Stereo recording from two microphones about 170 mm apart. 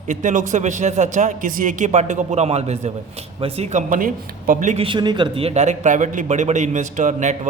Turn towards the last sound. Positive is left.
turn(degrees=-45)  # may be behind; listen again after turning